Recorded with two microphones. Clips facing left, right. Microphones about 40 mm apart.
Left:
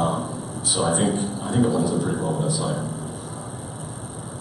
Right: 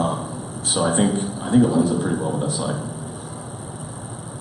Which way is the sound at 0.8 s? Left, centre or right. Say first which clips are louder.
Right 2 dB; centre.